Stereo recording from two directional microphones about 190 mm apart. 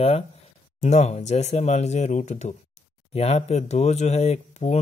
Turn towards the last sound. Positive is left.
turn(degrees=35)  # may be behind; listen again after turning